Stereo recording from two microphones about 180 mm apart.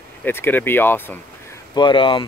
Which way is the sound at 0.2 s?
10° left (ahead or behind).